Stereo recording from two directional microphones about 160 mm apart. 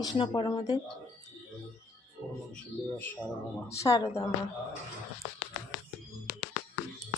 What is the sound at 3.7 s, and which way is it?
Speech, 20° left (ahead or behind).